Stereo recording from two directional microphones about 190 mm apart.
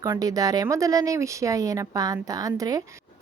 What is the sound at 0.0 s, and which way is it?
Speech, 15° right (ahead or behind).